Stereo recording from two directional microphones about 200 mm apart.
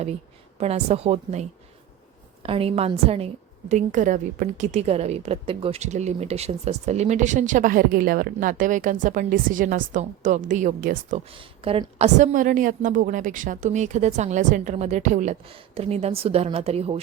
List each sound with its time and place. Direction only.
0.6 s a woman's voice: 30° right (ahead or behind)
11.3 s a woman's voice: 25° right (ahead or behind)